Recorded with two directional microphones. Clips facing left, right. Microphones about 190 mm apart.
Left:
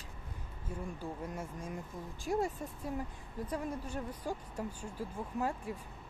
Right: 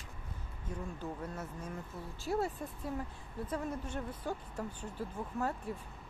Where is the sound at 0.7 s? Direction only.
10° left (ahead or behind).